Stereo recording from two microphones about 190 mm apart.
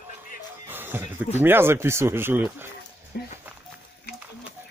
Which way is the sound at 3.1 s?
55° left (ahead or behind).